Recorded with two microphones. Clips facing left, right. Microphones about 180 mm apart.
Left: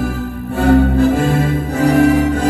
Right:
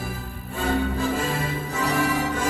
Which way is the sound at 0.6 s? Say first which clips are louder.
Left 13 dB; 65° left (ahead or behind).